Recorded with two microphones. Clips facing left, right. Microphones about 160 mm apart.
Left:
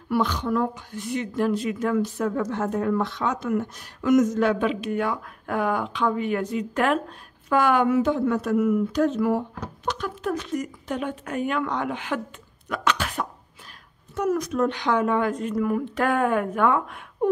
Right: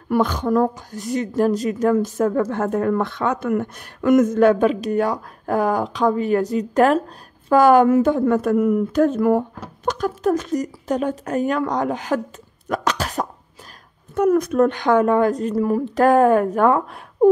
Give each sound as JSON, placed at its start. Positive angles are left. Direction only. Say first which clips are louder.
{"t": 0.1, "sound": "a woman's voice", "louder": "right 5 dB", "side_deg": -45}
{"t": 12.6, "sound": "cough", "louder": "right 3 dB", "side_deg": -40}
{"t": 14.1, "sound": "a woman's voice", "louder": "right 8 dB", "side_deg": -55}